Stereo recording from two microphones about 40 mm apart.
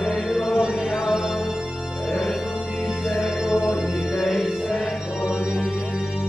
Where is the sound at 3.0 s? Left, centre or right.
Centre.